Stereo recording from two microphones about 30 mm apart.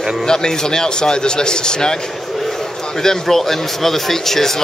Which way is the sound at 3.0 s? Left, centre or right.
Centre.